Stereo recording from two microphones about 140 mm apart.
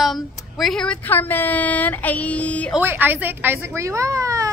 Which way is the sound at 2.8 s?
15° right (ahead or behind).